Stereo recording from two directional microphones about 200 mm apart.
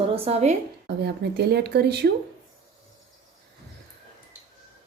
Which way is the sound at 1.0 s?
55° right (ahead or behind).